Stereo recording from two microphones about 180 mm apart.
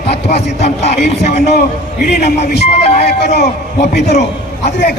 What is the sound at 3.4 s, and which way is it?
Speech, 65° left (ahead or behind).